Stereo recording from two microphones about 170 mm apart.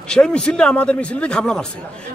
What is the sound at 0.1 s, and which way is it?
A man's voice, 5° left (ahead or behind).